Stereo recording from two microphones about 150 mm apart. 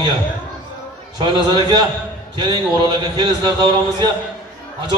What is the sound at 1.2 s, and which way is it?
A man's voice, 30° right (ahead or behind).